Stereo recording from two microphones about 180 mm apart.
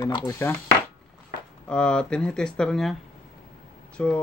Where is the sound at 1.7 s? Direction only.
5° left (ahead or behind).